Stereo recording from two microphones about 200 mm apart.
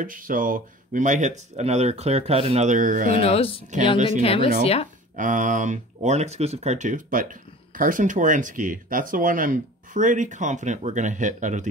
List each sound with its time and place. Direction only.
0.0 s speech: 40° right (ahead or behind)
3.2 s speech: 30° left (ahead or behind)
5.1 s speech: 40° right (ahead or behind)